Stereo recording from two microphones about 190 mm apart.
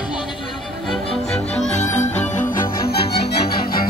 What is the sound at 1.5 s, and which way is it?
Music, 35° left (ahead or behind).